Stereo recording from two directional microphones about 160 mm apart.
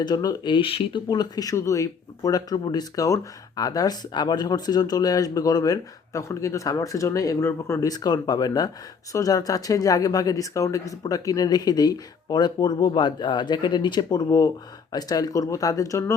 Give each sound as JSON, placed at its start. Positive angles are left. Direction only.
{"t": 0.0, "sound": "speech", "side_deg": 25}
{"t": 1.0, "sound": "speech", "side_deg": 25}